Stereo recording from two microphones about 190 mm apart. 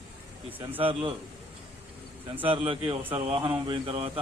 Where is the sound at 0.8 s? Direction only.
30° right (ahead or behind).